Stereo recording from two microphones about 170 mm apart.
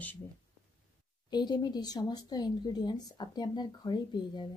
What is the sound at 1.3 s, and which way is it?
Speech, 25° left (ahead or behind).